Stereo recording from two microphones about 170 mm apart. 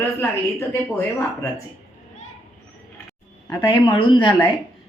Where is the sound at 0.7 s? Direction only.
15° left (ahead or behind).